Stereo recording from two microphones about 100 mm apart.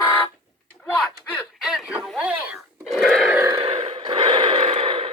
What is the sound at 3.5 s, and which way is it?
Burping, 70° right (ahead or behind).